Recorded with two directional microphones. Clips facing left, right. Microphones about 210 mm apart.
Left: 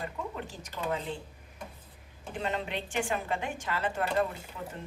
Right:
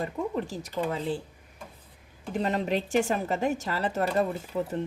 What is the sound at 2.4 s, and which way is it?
Speech, 40° right (ahead or behind).